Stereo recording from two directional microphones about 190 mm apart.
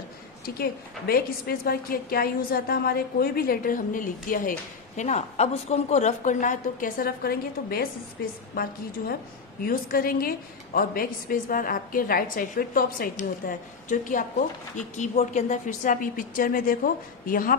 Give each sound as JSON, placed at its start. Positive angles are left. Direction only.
{"t": 0.6, "sound": "a woman's voice", "side_deg": 55}